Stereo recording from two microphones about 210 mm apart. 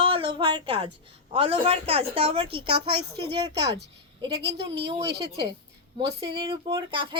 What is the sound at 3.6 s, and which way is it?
Speech, 55° right (ahead or behind).